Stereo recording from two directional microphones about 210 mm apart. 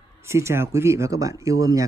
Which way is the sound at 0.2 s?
10° right (ahead or behind).